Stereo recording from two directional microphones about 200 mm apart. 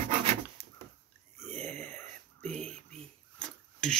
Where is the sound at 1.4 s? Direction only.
35° right (ahead or behind).